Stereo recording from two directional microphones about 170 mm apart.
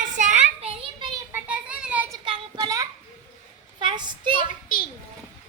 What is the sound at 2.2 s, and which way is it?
Child singing, 25° right (ahead or behind).